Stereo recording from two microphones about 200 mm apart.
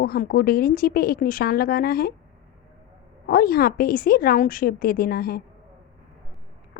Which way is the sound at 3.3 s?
50° left (ahead or behind).